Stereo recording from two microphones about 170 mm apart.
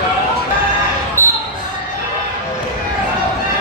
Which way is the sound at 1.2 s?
15° right (ahead or behind).